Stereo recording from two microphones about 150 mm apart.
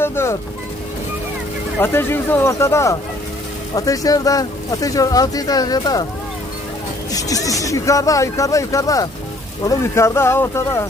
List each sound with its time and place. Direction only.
0.0 s vehicle: 15° left (ahead or behind)
1.8 s speech: 15° left (ahead or behind)
7.1 s speech: 25° left (ahead or behind)